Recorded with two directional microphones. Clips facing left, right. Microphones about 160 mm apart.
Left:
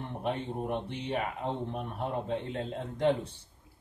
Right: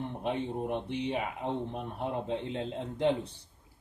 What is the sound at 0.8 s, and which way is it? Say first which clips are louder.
A man's voice: right 1 dB; 15° right (ahead or behind).